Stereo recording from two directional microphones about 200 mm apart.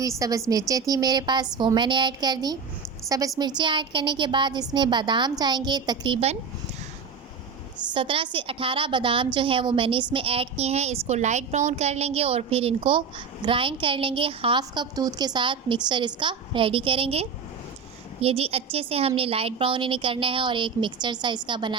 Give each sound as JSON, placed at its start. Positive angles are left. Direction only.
{"t": 0.2, "sound": "a woman's voice", "side_deg": -15}
{"t": 7.9, "sound": "a woman's voice", "side_deg": -25}